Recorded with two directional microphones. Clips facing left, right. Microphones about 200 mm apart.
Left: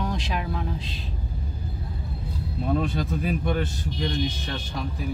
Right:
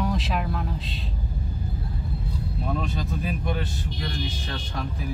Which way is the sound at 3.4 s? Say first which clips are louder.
Left 3 dB; 50° left (ahead or behind).